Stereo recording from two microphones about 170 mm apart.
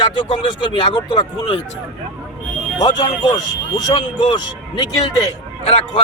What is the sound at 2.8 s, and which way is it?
Speech, 25° left (ahead or behind).